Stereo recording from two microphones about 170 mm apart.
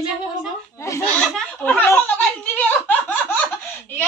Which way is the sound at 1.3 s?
5° left (ahead or behind).